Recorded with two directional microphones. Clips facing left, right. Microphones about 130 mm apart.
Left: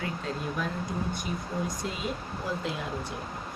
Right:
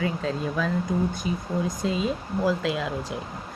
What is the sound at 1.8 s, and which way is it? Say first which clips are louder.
Speech: right 7 dB; 90° right.